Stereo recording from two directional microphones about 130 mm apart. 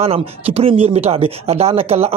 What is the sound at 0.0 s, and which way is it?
Speech, 50° right (ahead or behind).